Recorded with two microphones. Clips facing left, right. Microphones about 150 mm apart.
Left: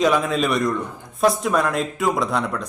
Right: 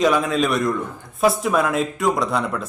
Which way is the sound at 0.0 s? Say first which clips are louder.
Right 1 dB; centre (ahead or behind).